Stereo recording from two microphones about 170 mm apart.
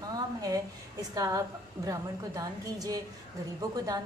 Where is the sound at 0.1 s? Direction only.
20° right (ahead or behind).